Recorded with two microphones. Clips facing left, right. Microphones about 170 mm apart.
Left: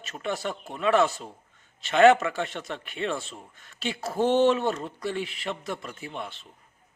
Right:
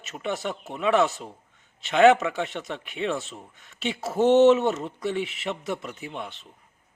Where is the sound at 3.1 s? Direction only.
Centre (ahead or behind).